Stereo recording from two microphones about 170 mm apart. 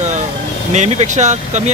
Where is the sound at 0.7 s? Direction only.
40° right (ahead or behind).